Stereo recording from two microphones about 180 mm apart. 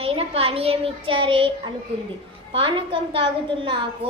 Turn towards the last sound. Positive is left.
turn(degrees=-30)  # may be behind; listen again after turning